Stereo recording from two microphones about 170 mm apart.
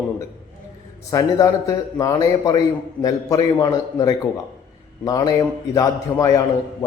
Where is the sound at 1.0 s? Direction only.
20° left (ahead or behind).